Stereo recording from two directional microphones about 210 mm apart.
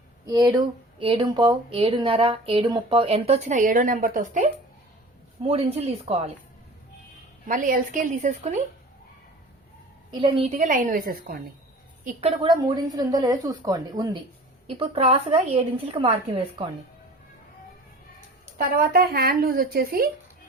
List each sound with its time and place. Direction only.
0.3 s speech: 20° right (ahead or behind); by 4.4 s 40° right (ahead or behind)
5.4 s speech: 30° right (ahead or behind)
7.4 s a woman's voice: 40° right (ahead or behind)
10.1 s a woman's voice: 25° right (ahead or behind); by 11.3 s 45° right (ahead or behind)
12.4 s speech: 20° right (ahead or behind)
14.7 s speech: 30° right (ahead or behind)
18.5 s speech: 45° right (ahead or behind)